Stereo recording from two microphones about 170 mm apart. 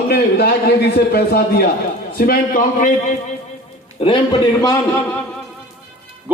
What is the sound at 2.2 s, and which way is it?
Speech, 55° left (ahead or behind).